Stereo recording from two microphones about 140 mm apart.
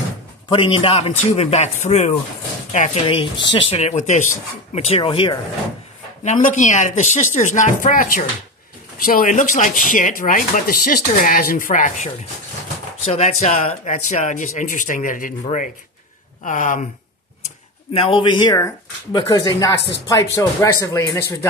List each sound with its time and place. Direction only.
0.5 s speech: 40° left (ahead or behind)
6.2 s speech: 60° left (ahead or behind); by 8.3 s 75° left (ahead or behind)
8.9 s speech: 85° left; by 12.1 s 65° left (ahead or behind)
13.1 s speech: 50° left (ahead or behind); by 15.3 s 75° left (ahead or behind)
16.4 s speech: 65° left (ahead or behind)
17.9 s speech: 40° left (ahead or behind); by 21.5 s 20° left (ahead or behind)